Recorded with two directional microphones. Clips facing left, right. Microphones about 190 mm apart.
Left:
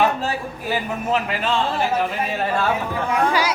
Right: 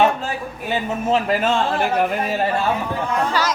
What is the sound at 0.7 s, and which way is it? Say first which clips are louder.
Speech: right 2 dB; 25° right (ahead or behind).